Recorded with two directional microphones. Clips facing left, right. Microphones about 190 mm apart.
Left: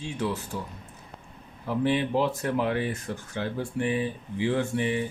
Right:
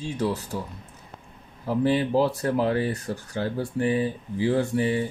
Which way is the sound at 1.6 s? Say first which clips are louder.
Right 3 dB; 40° right (ahead or behind).